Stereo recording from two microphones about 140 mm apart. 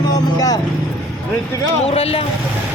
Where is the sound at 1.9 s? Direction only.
45° left (ahead or behind).